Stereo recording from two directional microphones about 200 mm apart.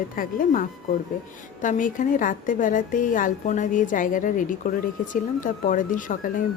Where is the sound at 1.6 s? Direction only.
40° left (ahead or behind).